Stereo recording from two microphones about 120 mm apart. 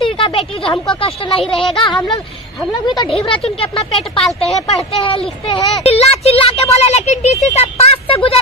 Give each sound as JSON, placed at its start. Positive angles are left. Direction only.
{"t": 0.0, "sound": "speech", "side_deg": 45}
{"t": 3.1, "sound": "speech", "side_deg": 55}